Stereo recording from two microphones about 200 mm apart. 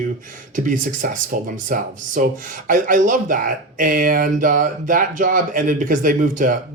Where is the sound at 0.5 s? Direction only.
40° right (ahead or behind).